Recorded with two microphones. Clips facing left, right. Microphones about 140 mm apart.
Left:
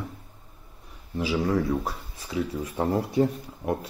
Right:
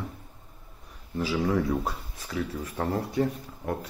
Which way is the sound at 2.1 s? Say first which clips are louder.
Left 3 dB; 15° left (ahead or behind).